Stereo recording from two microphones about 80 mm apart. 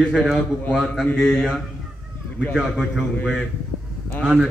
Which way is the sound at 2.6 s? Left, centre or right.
Centre.